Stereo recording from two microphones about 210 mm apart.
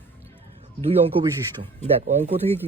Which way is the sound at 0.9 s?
30° right (ahead or behind).